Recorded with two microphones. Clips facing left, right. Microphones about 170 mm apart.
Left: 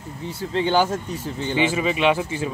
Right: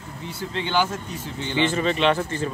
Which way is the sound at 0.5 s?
40° left (ahead or behind).